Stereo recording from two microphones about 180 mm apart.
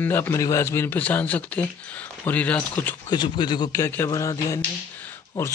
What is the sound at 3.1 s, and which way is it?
A man's voice, 25° left (ahead or behind).